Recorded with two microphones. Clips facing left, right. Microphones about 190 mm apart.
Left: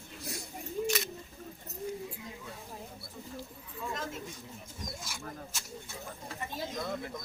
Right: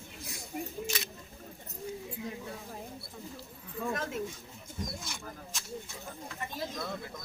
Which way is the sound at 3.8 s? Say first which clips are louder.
Right 5 dB; 55° right (ahead or behind).